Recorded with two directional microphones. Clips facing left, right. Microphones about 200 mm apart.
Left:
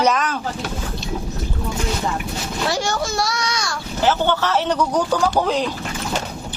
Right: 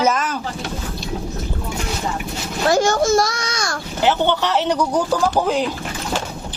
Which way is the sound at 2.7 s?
45° right (ahead or behind).